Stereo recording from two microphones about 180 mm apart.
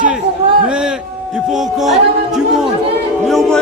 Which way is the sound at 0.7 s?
5° right (ahead or behind).